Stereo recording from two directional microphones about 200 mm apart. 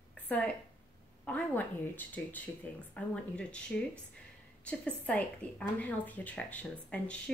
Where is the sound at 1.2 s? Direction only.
10° left (ahead or behind).